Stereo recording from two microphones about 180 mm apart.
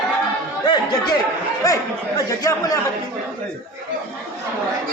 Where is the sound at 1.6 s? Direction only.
20° left (ahead or behind).